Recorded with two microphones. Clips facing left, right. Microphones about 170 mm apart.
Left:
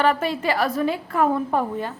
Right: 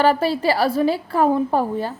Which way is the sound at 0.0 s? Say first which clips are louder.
Right 4 dB; 35° right (ahead or behind).